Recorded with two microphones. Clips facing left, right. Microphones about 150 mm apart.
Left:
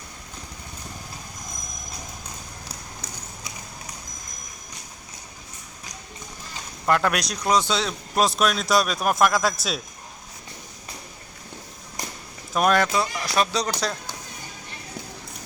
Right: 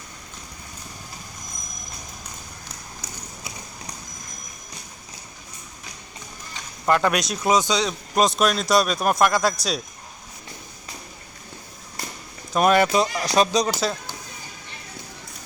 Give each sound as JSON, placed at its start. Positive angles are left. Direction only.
{"t": 6.8, "sound": "speech", "side_deg": 0}
{"t": 12.5, "sound": "speech", "side_deg": -5}
{"t": 12.9, "sound": "speech", "side_deg": -20}
{"t": 13.6, "sound": "speech", "side_deg": -5}